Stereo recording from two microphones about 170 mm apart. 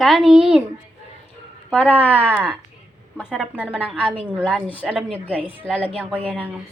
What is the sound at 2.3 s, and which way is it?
A woman's voice, 10° right (ahead or behind).